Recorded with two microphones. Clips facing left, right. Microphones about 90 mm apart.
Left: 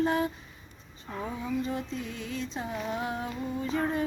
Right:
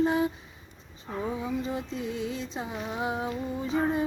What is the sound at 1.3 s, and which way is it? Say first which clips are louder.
Music: even; 15° right (ahead or behind).